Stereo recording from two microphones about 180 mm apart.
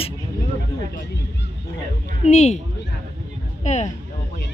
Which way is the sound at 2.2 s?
40° left (ahead or behind).